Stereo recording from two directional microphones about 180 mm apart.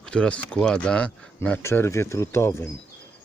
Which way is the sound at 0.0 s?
5° left (ahead or behind).